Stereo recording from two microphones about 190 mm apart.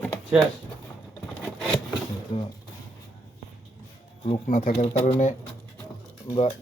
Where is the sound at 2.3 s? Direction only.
25° left (ahead or behind).